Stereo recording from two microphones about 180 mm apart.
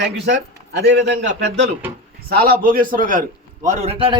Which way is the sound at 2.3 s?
55° right (ahead or behind).